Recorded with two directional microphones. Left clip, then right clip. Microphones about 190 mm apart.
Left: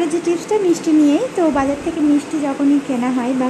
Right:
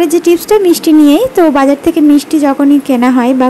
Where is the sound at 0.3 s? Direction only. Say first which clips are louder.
Right 8 dB; 30° right (ahead or behind).